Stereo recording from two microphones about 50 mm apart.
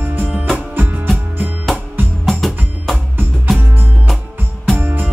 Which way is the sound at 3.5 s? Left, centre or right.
Right.